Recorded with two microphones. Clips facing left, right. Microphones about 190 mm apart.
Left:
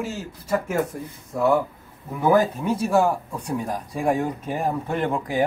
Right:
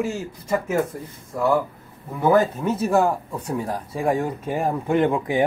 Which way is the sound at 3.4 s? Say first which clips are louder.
Even; 10° left (ahead or behind).